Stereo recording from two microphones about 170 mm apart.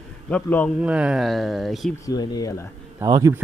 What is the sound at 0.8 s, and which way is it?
A man's voice, 5° right (ahead or behind).